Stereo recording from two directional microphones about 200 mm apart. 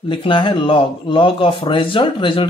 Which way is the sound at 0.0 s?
25° left (ahead or behind).